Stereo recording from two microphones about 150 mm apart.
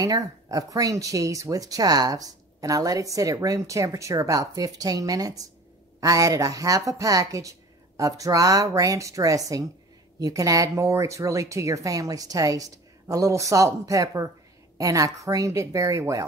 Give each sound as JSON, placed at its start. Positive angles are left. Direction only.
{"t": 0.0, "sound": "speech", "side_deg": -25}